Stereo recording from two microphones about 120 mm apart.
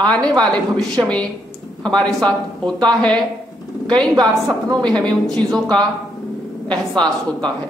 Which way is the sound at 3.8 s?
35° right (ahead or behind).